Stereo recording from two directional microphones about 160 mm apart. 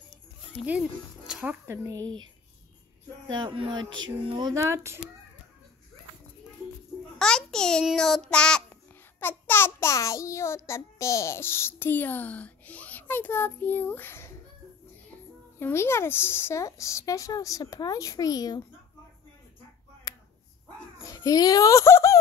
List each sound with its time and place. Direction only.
0.7 s speech: 5° right (ahead or behind)
3.3 s speech: 30° right (ahead or behind)
7.2 s a child's voice: 5° left (ahead or behind)
15.6 s speech: 15° left (ahead or behind)
20.1 s a sound: 25° left (ahead or behind)
21.0 s a child's voice: 20° left (ahead or behind)